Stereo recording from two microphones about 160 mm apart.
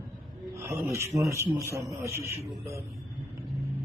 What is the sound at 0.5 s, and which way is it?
A man's voice, 15° right (ahead or behind).